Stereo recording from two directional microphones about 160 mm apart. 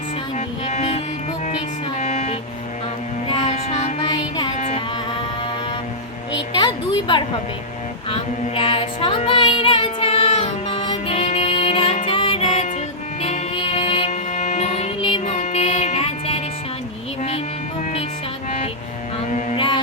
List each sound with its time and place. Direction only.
0.3 s music: 45° left (ahead or behind)
2.0 s vehicle: 45° left (ahead or behind)
3.2 s a sound: 30° left (ahead or behind)
4.0 s child singing: 30° left (ahead or behind)
6.3 s a sound: 30° left (ahead or behind)
8.1 s child singing: 35° left (ahead or behind)
12.0 s music: 35° left (ahead or behind)
19.5 s music: 30° left (ahead or behind)